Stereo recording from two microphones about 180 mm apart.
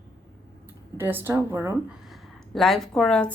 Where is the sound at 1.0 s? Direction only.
10° right (ahead or behind).